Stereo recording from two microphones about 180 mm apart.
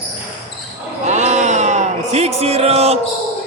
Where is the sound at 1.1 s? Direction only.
40° right (ahead or behind).